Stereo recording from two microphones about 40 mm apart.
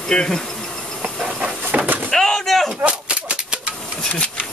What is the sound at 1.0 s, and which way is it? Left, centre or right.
Hiss, centre.